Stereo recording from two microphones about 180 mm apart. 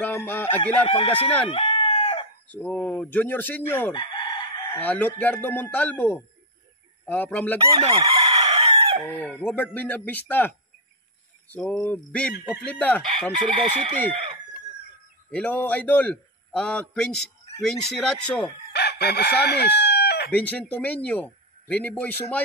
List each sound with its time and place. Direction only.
0.0 s speech: 10° left (ahead or behind)
0.8 s speech: 30° left (ahead or behind)
1.5 s crowing: 30° left (ahead or behind)
2.5 s a man's voice: 10° left (ahead or behind)
3.9 s chicken: 25° left (ahead or behind)
4.7 s a man's voice: 10° left (ahead or behind)
7.8 s chicken: 35° right (ahead or behind)
9.1 s a man's voice: 10° left (ahead or behind)
15.3 s a man's voice: 5° left (ahead or behind)
18.7 s chicken: 65° left (ahead or behind)
20.3 s a man's voice: 5° left (ahead or behind)